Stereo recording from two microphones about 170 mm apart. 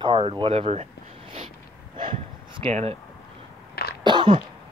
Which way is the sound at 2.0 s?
30° right (ahead or behind).